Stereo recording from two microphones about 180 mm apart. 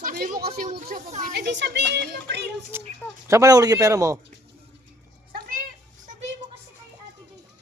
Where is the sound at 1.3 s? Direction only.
75° right (ahead or behind).